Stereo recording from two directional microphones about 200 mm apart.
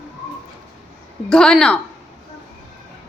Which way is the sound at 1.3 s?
5° left (ahead or behind).